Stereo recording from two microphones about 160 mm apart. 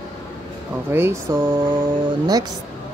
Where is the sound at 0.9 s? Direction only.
15° right (ahead or behind).